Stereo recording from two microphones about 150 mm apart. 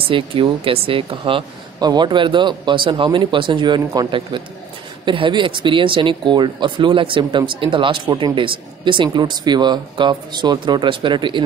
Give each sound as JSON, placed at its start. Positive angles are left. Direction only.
{"t": 0.0, "sound": "speech", "side_deg": -35}